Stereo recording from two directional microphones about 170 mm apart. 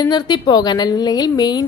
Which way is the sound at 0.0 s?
25° left (ahead or behind).